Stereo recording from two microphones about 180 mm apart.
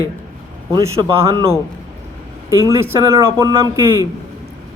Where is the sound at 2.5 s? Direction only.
15° right (ahead or behind).